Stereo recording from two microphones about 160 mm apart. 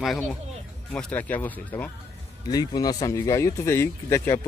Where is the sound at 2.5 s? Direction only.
25° left (ahead or behind).